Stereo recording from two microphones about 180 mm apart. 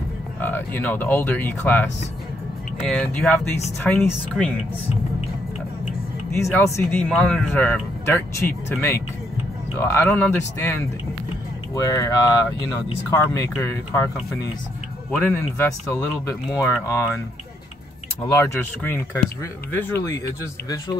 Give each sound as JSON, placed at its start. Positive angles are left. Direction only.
{"t": 0.4, "sound": "speech", "side_deg": 10}
{"t": 2.9, "sound": "speech", "side_deg": 5}
{"t": 6.3, "sound": "speech", "side_deg": 15}
{"t": 18.4, "sound": "speech", "side_deg": 10}